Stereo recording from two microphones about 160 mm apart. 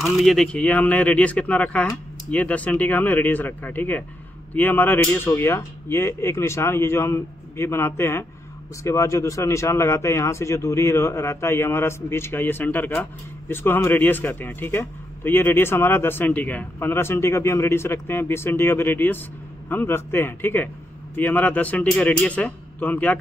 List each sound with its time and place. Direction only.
0.0 s speech: centre (ahead or behind)